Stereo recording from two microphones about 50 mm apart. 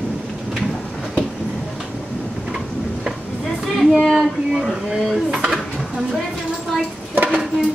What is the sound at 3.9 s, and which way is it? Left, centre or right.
Dishes, centre.